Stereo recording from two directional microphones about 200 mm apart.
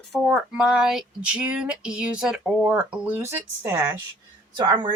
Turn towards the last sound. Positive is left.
turn(degrees=-20)  # may be behind; listen again after turning